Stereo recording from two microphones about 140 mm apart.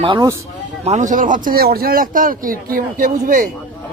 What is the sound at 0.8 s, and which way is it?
Speech, 55° right (ahead or behind).